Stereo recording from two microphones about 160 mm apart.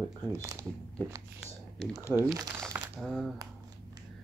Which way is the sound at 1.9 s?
15° right (ahead or behind).